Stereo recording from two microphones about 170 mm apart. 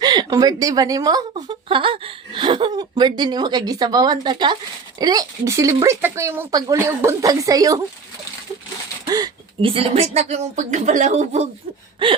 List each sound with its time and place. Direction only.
0.0 s a woman's voice: 25° right (ahead or behind)
9.0 s speech: 25° right (ahead or behind)